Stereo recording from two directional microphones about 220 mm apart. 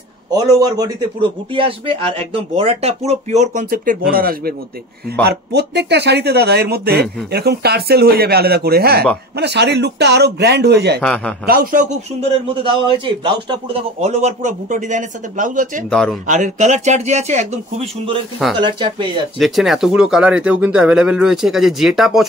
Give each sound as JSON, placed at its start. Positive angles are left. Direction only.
{"t": 0.3, "sound": "a man's voice", "side_deg": -15}
{"t": 11.0, "sound": "speech", "side_deg": 5}
{"t": 11.4, "sound": "a man's voice", "side_deg": -40}
{"t": 15.9, "sound": "speech", "side_deg": 0}
{"t": 16.3, "sound": "a man's voice", "side_deg": -35}
{"t": 19.3, "sound": "speech", "side_deg": 0}